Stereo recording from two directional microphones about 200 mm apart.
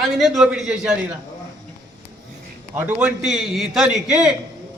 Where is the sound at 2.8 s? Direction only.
10° right (ahead or behind).